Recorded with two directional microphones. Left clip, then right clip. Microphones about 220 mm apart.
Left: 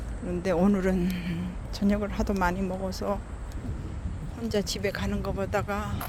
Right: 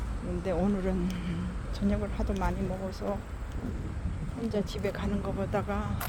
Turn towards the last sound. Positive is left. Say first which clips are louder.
# left 3 dB
turn(degrees=15)  # may be behind; listen again after turning